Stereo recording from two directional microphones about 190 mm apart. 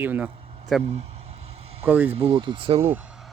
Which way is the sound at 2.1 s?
30° right (ahead or behind).